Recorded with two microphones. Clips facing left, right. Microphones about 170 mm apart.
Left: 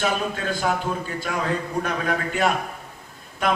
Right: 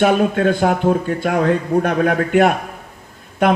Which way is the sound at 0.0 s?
60° right (ahead or behind).